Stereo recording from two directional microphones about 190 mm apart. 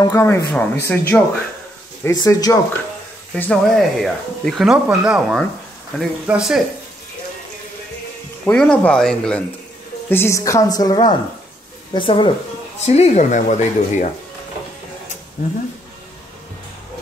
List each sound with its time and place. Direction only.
0.0 s speech: 15° left (ahead or behind)
3.3 s speech: 5° left (ahead or behind)
8.5 s speech: 5° left (ahead or behind); by 14.1 s 40° left (ahead or behind)